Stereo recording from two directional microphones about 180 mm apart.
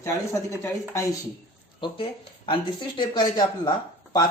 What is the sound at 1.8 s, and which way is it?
Speech, 30° left (ahead or behind).